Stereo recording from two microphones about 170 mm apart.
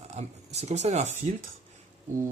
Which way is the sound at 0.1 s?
40° right (ahead or behind).